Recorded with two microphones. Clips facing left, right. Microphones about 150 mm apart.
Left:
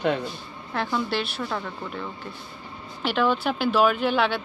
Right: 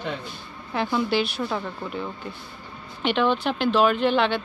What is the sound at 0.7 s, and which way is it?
Speech, 5° right (ahead or behind).